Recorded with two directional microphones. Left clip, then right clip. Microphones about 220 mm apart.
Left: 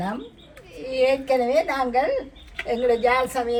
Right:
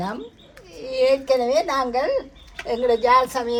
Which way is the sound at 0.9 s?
20° right (ahead or behind).